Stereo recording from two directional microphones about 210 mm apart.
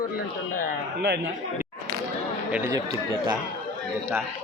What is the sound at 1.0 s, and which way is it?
Speech, 55° right (ahead or behind).